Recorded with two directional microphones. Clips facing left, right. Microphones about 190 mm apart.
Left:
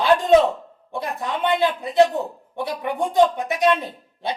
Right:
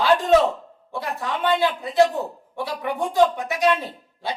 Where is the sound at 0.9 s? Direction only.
20° left (ahead or behind).